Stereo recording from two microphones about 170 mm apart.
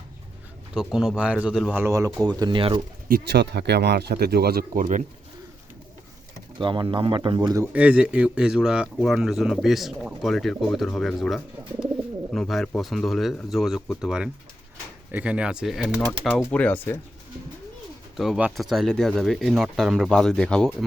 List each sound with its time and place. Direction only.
0.7 s a man's voice: 5° right (ahead or behind)
1.8 s speech: 20° right (ahead or behind)
2.4 s speech: 30° right (ahead or behind)
3.1 s speech: 80° right; by 5.0 s 50° right (ahead or behind)
6.6 s a man's voice: 30° right (ahead or behind); by 17.0 s 10° left (ahead or behind)
18.2 s a man's voice: 5° right (ahead or behind)